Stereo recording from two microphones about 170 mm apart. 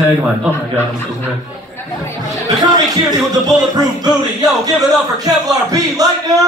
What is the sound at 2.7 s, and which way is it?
Speech, 25° right (ahead or behind).